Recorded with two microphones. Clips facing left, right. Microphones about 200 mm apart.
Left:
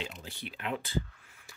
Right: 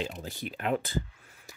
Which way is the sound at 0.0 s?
45° right (ahead or behind).